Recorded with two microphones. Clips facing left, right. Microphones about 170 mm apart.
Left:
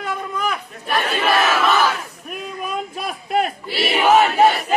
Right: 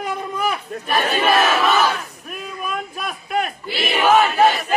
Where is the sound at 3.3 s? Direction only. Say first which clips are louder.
Left 3 dB; 30° left (ahead or behind).